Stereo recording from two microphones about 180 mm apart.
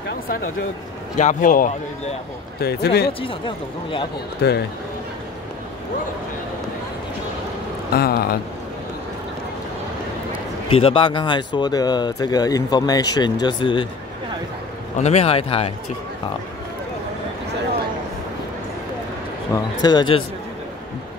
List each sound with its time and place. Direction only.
1.1 s a man's voice: 45° left (ahead or behind)
2.6 s speech: 65° left (ahead or behind)
3.1 s speech: 30° left (ahead or behind)
4.4 s speech: 65° left (ahead or behind)
7.9 s speech: 60° left (ahead or behind)
10.7 s speech: 30° left (ahead or behind)
15.0 s speech: 40° left (ahead or behind)
19.5 s speech: 25° left (ahead or behind)